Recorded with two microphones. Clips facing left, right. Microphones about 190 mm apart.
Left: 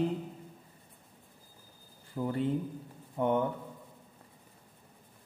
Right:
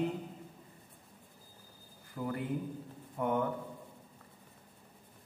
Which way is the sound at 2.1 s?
25° left (ahead or behind).